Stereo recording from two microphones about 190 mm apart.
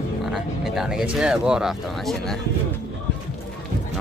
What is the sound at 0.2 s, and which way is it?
Speech, centre (ahead or behind).